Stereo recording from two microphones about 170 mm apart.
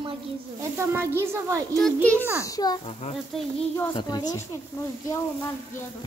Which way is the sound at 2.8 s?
40° left (ahead or behind).